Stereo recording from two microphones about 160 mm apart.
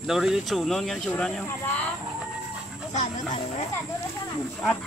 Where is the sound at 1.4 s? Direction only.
15° left (ahead or behind).